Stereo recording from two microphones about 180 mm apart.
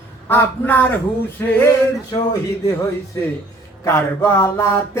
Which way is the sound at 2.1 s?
25° left (ahead or behind).